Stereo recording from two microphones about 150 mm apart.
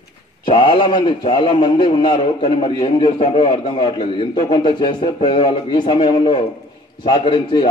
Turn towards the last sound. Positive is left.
turn(degrees=35)  # may be behind; listen again after turning